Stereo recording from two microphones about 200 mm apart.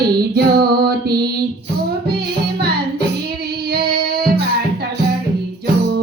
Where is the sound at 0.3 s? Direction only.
50° right (ahead or behind).